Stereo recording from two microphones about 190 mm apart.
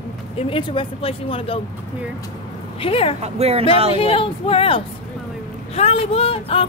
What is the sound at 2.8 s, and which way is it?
Speech, 30° left (ahead or behind).